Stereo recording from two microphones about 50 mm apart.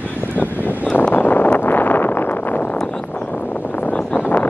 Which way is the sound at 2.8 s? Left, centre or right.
Centre.